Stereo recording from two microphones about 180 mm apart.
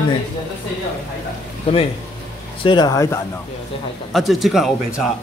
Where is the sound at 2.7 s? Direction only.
20° left (ahead or behind).